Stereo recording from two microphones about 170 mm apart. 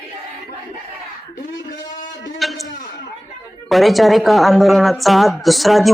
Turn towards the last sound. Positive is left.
turn(degrees=0)  # may be behind; listen again after turning